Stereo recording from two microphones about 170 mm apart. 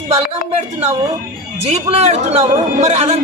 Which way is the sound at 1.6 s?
40° right (ahead or behind).